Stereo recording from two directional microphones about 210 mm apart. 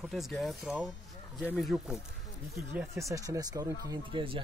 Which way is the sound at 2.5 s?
10° right (ahead or behind).